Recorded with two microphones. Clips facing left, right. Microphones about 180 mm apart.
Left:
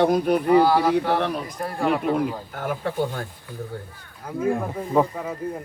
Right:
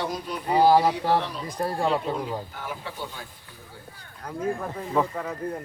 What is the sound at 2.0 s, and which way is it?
Speech, 60° left (ahead or behind).